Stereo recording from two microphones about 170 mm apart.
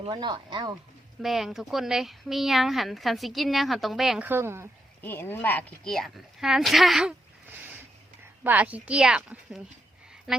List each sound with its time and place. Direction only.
0.0 s speech: 25° right (ahead or behind)
1.2 s speech: centre (ahead or behind)
5.0 s speech: 15° left (ahead or behind)
8.4 s speech: 10° right (ahead or behind)